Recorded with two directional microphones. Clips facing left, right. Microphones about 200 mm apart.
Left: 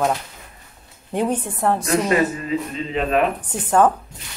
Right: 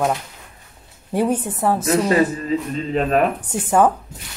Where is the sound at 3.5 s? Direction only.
10° right (ahead or behind).